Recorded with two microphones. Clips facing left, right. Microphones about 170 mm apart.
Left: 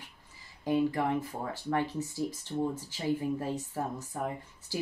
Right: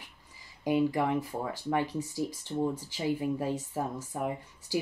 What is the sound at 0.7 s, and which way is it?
Speech, 15° right (ahead or behind).